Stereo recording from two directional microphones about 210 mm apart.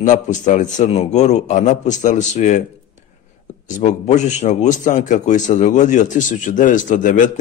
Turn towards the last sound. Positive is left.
turn(degrees=40)  # may be behind; listen again after turning